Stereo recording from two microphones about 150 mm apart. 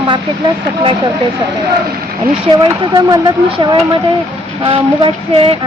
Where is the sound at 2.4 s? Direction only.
35° right (ahead or behind).